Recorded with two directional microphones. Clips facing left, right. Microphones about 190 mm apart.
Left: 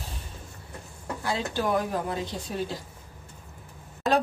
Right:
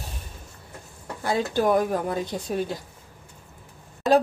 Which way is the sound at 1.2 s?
50° right (ahead or behind).